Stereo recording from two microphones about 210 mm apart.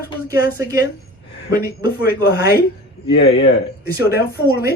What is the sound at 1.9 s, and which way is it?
Speech, 50° left (ahead or behind).